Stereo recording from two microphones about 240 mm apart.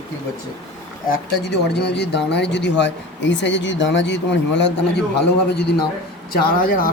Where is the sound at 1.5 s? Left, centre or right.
Left.